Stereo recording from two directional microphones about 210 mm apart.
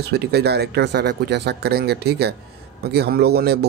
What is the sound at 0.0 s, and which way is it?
Speech, 50° right (ahead or behind).